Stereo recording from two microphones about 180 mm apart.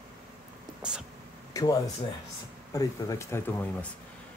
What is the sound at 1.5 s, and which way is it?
Speech, 20° left (ahead or behind).